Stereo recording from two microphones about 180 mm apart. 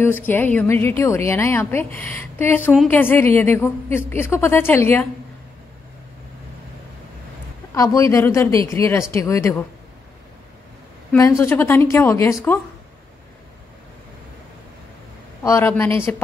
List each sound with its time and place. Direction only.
0.0 s a woman's voice: 10° left (ahead or behind)
7.7 s a woman's voice: 20° left (ahead or behind)
11.1 s a woman's voice: 15° left (ahead or behind)
15.4 s a woman's voice: 15° left (ahead or behind)